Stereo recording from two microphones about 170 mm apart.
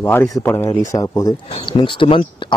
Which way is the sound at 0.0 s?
15° left (ahead or behind).